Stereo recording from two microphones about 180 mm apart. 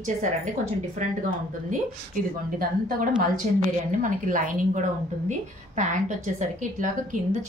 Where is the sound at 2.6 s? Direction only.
50° right (ahead or behind).